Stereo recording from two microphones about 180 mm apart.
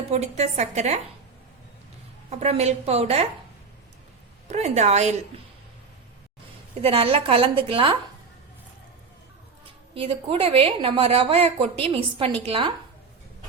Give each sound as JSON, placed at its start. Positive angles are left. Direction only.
{"t": 0.1, "sound": "a woman's voice", "side_deg": -40}
{"t": 2.3, "sound": "a woman's voice", "side_deg": -35}
{"t": 4.4, "sound": "a woman's voice", "side_deg": -40}
{"t": 6.8, "sound": "a woman's voice", "side_deg": -30}
{"t": 9.9, "sound": "a woman's voice", "side_deg": -30}